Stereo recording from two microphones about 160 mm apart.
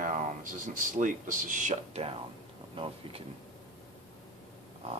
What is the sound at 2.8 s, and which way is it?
Speech, 35° right (ahead or behind).